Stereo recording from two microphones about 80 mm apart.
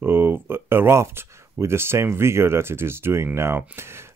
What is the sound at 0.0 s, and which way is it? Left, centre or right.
Speech, right.